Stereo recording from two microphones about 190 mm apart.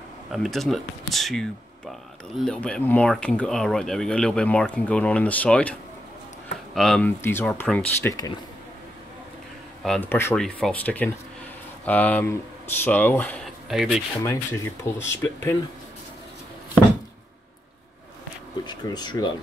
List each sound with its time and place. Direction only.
0.3 s speech: centre (ahead or behind)
9.8 s speech: 10° left (ahead or behind)
13.7 s speech: centre (ahead or behind)
14.2 s speech: 15° left (ahead or behind)
18.7 s speech: 20° left (ahead or behind)